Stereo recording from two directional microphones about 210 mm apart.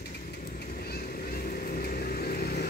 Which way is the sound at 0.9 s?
45° left (ahead or behind).